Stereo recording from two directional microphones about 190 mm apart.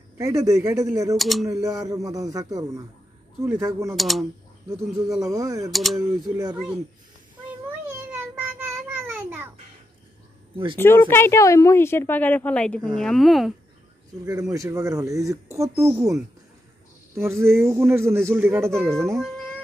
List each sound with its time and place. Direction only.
0.2 s a man's voice: 15° right (ahead or behind)
1.1 s speech: centre (ahead or behind)
1.5 s a man's voice: 15° right (ahead or behind)
3.9 s speech: centre (ahead or behind)
4.6 s a man's voice: 15° right (ahead or behind)
5.7 s speech: centre (ahead or behind)
5.9 s speech: 20° right (ahead or behind)
6.5 s a man's voice: 5° right (ahead or behind)
8.1 s child singing: 10° right (ahead or behind)
10.8 s a woman's voice: 10° left (ahead or behind)
14.5 s a man's voice: 15° right (ahead or behind)
18.7 s speech: 5° left (ahead or behind)